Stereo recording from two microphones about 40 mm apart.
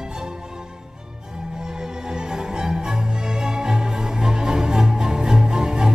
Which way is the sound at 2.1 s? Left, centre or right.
Centre.